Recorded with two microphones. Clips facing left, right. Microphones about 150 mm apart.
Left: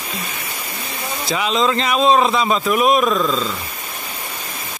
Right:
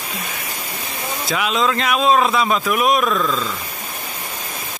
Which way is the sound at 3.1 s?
25° left (ahead or behind).